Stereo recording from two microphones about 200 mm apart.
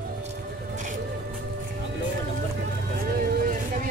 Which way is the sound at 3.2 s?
45° right (ahead or behind).